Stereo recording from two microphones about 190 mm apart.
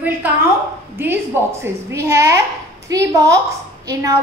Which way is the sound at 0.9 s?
10° right (ahead or behind).